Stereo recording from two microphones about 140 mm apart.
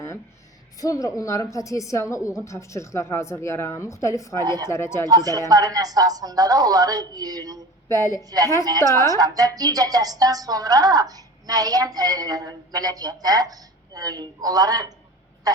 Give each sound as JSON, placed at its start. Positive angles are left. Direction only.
{"t": 0.8, "sound": "a woman's voice", "side_deg": 25}
{"t": 4.4, "sound": "speech", "side_deg": -30}
{"t": 4.7, "sound": "a woman's voice", "side_deg": 20}
{"t": 5.0, "sound": "speech", "side_deg": -25}
{"t": 7.9, "sound": "a woman's voice", "side_deg": 20}
{"t": 8.2, "sound": "speech", "side_deg": -25}